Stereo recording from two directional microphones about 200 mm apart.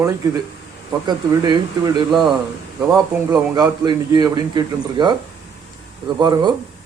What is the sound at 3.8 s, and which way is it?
A man's voice, 20° right (ahead or behind).